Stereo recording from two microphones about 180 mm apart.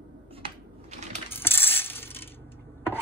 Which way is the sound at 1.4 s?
10° left (ahead or behind).